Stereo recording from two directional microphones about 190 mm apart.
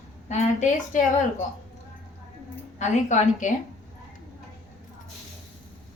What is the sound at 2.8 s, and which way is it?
Speech, 40° left (ahead or behind).